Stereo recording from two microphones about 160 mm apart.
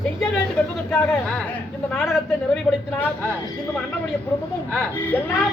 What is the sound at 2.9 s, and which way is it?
Speech, 15° left (ahead or behind).